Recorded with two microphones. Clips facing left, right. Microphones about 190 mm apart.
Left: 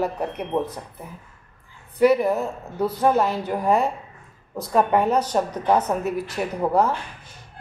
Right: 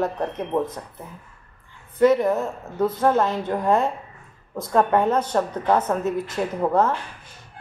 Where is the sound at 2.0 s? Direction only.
10° left (ahead or behind).